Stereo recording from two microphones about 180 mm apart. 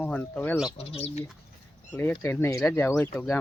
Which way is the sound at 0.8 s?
35° left (ahead or behind).